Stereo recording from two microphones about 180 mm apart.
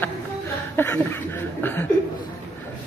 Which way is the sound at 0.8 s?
10° left (ahead or behind).